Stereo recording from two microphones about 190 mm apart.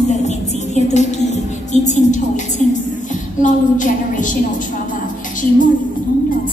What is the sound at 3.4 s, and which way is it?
Speech, 40° left (ahead or behind).